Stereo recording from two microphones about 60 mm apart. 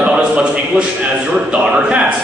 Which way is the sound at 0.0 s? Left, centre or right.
Centre.